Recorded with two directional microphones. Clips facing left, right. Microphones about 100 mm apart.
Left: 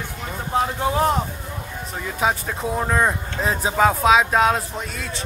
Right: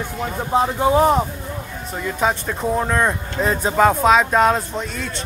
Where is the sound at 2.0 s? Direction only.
5° left (ahead or behind).